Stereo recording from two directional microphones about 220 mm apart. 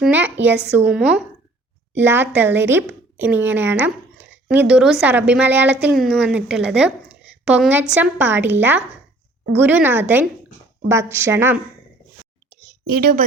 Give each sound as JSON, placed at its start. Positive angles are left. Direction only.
{"t": 0.0, "sound": "a woman's voice", "side_deg": -5}
{"t": 13.0, "sound": "a woman's voice", "side_deg": -40}